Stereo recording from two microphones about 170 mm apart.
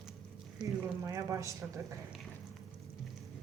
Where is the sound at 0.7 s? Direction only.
15° right (ahead or behind).